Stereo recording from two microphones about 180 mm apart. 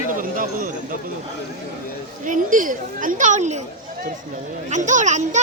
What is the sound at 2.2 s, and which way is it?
Speech, 45° right (ahead or behind).